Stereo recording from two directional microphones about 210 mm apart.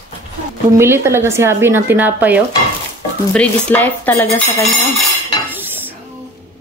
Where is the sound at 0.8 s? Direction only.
10° right (ahead or behind).